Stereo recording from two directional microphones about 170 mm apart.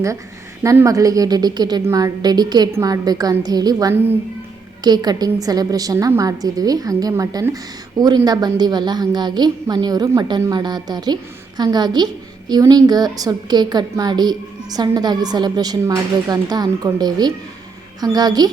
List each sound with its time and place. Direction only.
0.6 s a woman's voice: 20° right (ahead or behind)